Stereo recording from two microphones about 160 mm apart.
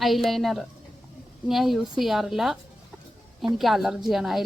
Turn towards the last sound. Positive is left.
turn(degrees=0)  # may be behind; listen again after turning